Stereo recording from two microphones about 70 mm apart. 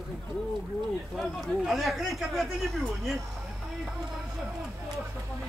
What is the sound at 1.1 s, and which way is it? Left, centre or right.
A man's voice, centre.